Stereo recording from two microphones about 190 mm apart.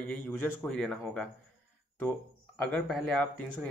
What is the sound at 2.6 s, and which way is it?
Speech, 5° left (ahead or behind).